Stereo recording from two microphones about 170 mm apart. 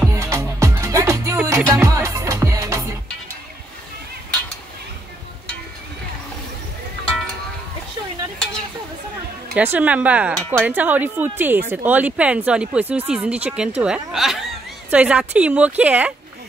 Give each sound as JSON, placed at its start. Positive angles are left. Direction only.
{"t": 0.0, "sound": "music", "side_deg": -15}
{"t": 9.6, "sound": "speech", "side_deg": -10}
{"t": 10.3, "sound": "a woman's voice", "side_deg": 5}
{"t": 10.6, "sound": "a woman's voice", "side_deg": -10}